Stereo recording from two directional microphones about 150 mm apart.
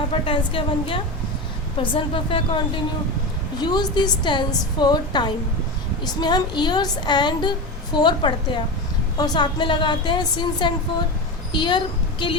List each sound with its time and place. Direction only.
0.1 s a woman's voice: 35° left (ahead or behind)